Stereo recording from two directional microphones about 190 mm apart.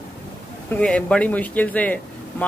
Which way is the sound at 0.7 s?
5° left (ahead or behind).